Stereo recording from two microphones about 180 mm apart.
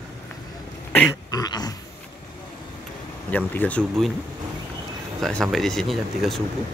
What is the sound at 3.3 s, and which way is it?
Speech, 10° left (ahead or behind).